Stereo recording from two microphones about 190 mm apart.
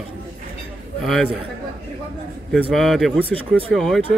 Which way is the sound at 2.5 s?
Centre (ahead or behind).